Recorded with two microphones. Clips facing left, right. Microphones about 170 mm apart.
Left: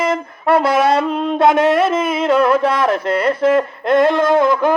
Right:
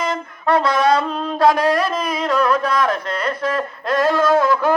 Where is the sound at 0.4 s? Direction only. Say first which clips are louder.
Left 2 dB; 25° left (ahead or behind).